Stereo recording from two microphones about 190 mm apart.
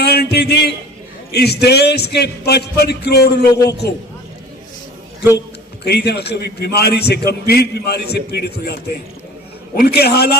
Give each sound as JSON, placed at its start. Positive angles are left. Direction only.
{"t": 0.0, "sound": "a man's voice", "side_deg": 60}
{"t": 3.5, "sound": "a man's voice", "side_deg": 20}
{"t": 5.8, "sound": "a man's voice", "side_deg": 60}
{"t": 9.8, "sound": "a man's voice", "side_deg": 60}